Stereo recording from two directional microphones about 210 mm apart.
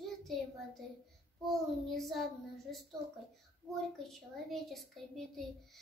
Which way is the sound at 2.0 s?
Centre (ahead or behind).